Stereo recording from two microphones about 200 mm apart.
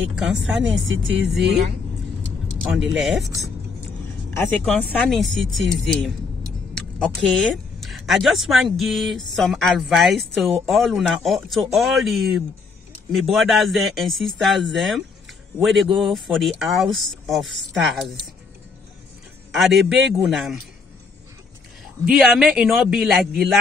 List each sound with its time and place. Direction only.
0.1 s speech: 5° right (ahead or behind)
0.8 s speech: 70° right (ahead or behind)
2.6 s speech: 5° right (ahead or behind)
4.3 s speech: 10° left (ahead or behind)
6.7 s speech: 5° left (ahead or behind)
19.5 s speech: centre (ahead or behind)
22.0 s speech: centre (ahead or behind)